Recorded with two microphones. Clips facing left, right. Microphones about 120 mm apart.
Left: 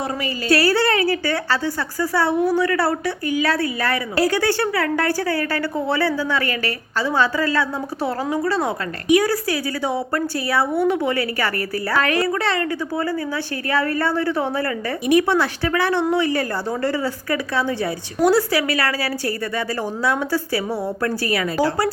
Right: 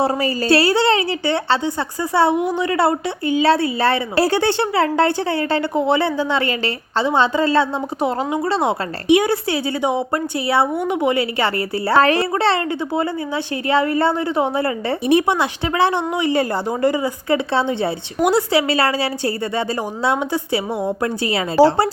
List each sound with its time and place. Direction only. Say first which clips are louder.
0.0 s a woman's voice: right 6 dB; 30° right (ahead or behind)